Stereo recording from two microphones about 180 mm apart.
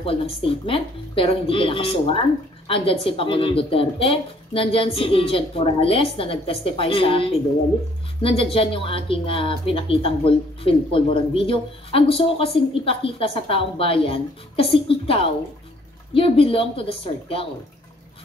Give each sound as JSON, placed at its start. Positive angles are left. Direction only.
{"t": 0.0, "sound": "speech", "side_deg": 30}